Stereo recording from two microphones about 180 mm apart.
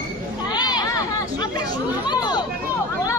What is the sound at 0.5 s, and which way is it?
Speech, 20° left (ahead or behind).